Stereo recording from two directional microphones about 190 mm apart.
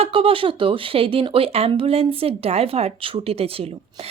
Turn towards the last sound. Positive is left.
turn(degrees=-30)  # may be behind; listen again after turning